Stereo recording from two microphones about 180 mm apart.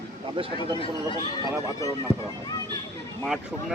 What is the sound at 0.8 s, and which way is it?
Speech, 30° left (ahead or behind).